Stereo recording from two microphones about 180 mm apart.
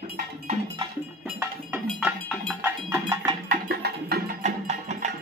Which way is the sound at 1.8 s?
5° right (ahead or behind).